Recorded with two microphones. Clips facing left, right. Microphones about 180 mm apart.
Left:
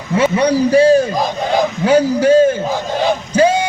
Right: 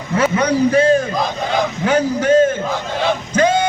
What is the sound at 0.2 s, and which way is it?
A man's voice, 35° left (ahead or behind).